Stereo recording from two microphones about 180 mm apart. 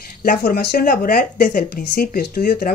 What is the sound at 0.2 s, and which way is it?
A man's voice, 50° left (ahead or behind).